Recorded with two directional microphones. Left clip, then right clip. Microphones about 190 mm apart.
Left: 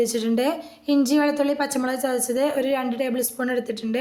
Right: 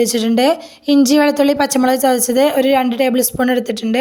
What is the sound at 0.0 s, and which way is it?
A woman's voice, 45° right (ahead or behind).